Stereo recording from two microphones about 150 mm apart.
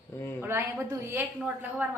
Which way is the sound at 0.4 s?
15° right (ahead or behind).